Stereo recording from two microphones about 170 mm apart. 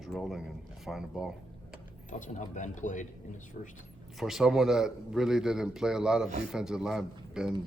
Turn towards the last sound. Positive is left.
turn(degrees=-5)  # may be behind; listen again after turning